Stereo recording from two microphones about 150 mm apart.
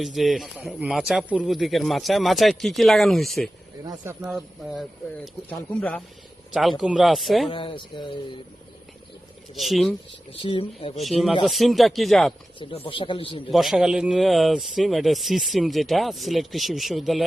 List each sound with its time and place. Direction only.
0.0 s speech: centre (ahead or behind)
5.5 s speech: 10° left (ahead or behind)
6.5 s speech: centre (ahead or behind)
7.5 s speech: 35° left (ahead or behind)
9.6 s speech: centre (ahead or behind)
10.4 s speech: 35° left (ahead or behind)
10.9 s speech: centre (ahead or behind)
12.5 s speech: 35° left (ahead or behind)
13.5 s speech: centre (ahead or behind)